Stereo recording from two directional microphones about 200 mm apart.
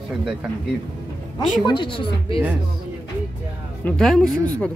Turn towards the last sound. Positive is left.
turn(degrees=5)  # may be behind; listen again after turning